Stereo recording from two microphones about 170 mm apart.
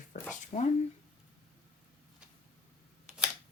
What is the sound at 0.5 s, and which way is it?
Speech, 40° left (ahead or behind).